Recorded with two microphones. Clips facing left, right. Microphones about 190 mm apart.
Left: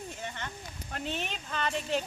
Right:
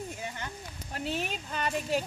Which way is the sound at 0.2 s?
10° right (ahead or behind).